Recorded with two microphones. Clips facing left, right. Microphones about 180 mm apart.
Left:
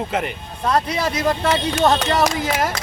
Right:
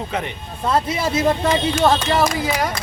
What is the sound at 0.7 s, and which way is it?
Speech, 25° right (ahead or behind).